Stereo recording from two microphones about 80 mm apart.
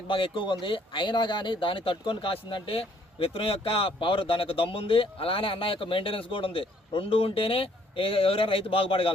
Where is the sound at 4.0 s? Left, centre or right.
Left.